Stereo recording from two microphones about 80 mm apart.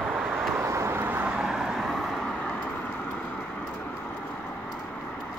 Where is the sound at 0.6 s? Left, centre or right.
Right; by 1.9 s centre.